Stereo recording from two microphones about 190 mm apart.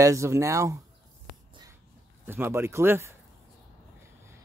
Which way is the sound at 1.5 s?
20° right (ahead or behind).